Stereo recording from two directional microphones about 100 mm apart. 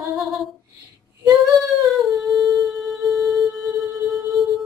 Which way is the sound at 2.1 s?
Centre (ahead or behind).